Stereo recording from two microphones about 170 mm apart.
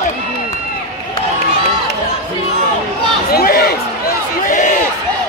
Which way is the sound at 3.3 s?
60° left (ahead or behind).